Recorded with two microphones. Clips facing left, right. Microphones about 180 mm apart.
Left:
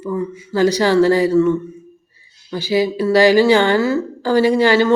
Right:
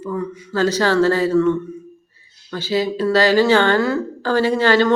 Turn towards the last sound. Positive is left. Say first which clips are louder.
# left 2 dB
turn(degrees=10)  # may be behind; listen again after turning